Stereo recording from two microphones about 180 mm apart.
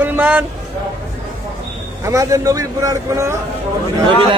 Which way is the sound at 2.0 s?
20° right (ahead or behind).